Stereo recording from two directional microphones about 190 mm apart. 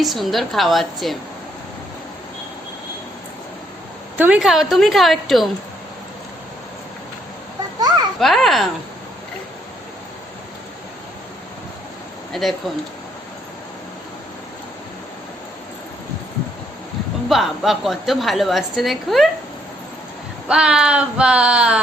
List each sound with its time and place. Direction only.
0.0 s a woman's voice: centre (ahead or behind)
4.2 s a woman's voice: 5° right (ahead or behind)
7.8 s children playing: 20° right (ahead or behind)
8.2 s a woman's voice: centre (ahead or behind)
12.3 s a woman's voice: centre (ahead or behind)
17.2 s a woman's voice: centre (ahead or behind)
20.5 s a woman's voice: 5° right (ahead or behind)